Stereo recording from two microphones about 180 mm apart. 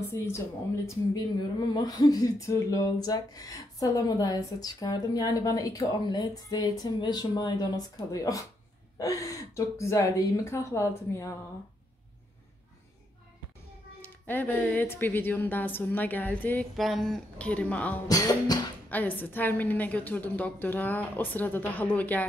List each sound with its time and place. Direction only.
0.2 s speech: 15° left (ahead or behind)
1.7 s speech: 20° left (ahead or behind)
8.9 s a sound: 20° left (ahead or behind)
9.8 s speech: 15° left (ahead or behind)
14.0 s speech: 10° left (ahead or behind)
18.0 s speech: 20° left (ahead or behind)
18.9 s speech: 10° left (ahead or behind)